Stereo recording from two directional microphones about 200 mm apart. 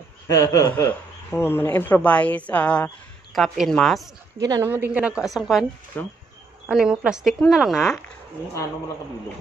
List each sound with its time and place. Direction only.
0.3 s a woman's voice: 15° left (ahead or behind); by 4.1 s centre (ahead or behind)
4.4 s a woman's voice: 15° right (ahead or behind); by 5.7 s centre (ahead or behind)
5.9 s speech: 10° left (ahead or behind)
6.7 s a woman's voice: 5° right (ahead or behind)